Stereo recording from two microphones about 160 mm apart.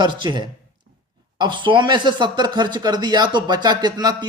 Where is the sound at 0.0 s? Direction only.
30° right (ahead or behind).